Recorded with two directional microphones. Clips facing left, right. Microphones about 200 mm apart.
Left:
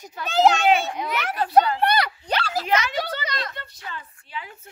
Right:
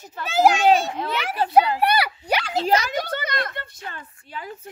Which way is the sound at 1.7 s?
10° right (ahead or behind).